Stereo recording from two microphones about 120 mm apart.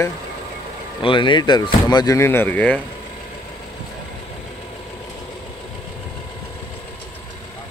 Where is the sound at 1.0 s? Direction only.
45° left (ahead or behind).